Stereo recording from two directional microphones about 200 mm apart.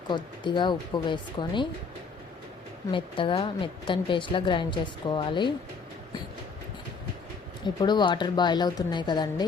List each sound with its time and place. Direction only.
0.1 s a woman's voice: 25° left (ahead or behind)
2.9 s a woman's voice: 25° left (ahead or behind)
7.8 s a woman's voice: 20° left (ahead or behind)